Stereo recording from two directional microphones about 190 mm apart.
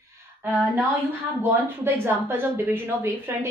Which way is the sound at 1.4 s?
10° right (ahead or behind).